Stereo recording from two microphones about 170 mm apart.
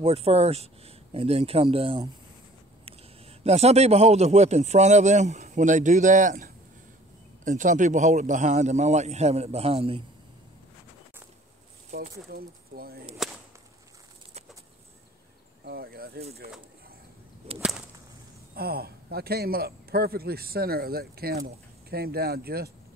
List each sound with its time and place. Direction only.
0.0 s a man's voice: 35° right (ahead or behind)
11.9 s speech: 55° right (ahead or behind)
13.2 s whip: centre (ahead or behind)
15.6 s a sound: 70° right (ahead or behind)
17.6 s whip: 5° right (ahead or behind)
18.5 s a man's voice: 65° right (ahead or behind)